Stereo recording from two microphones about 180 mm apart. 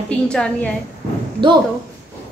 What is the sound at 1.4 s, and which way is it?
Speech, 25° right (ahead or behind).